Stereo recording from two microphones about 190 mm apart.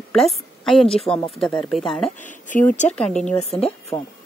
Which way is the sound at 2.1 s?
40° left (ahead or behind).